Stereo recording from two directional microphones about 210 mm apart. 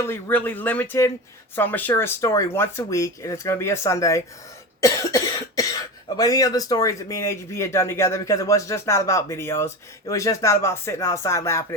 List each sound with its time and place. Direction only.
0.0 s speech: 10° left (ahead or behind)
4.8 s cough: 15° left (ahead or behind)
6.1 s speech: 15° left (ahead or behind)